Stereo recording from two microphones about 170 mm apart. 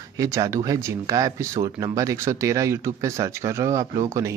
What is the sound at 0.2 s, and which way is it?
Speech, 20° right (ahead or behind).